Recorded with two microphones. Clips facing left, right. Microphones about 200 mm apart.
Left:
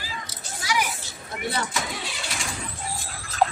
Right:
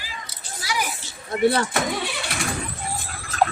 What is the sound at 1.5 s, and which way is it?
Vehicle, 60° right (ahead or behind).